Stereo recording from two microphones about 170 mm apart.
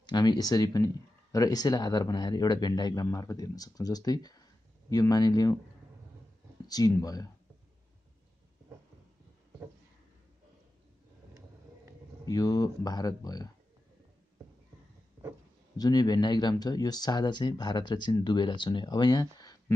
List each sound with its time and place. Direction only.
0.1 s speech: 25° left (ahead or behind)
6.7 s speech: 20° left (ahead or behind)
12.3 s speech: 20° left (ahead or behind)
15.8 s speech: 25° left (ahead or behind)